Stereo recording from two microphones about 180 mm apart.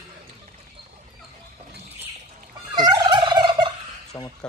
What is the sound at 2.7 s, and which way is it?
Fowl, 25° right (ahead or behind).